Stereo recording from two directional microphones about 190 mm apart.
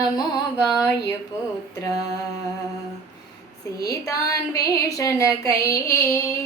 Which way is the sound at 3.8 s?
15° left (ahead or behind).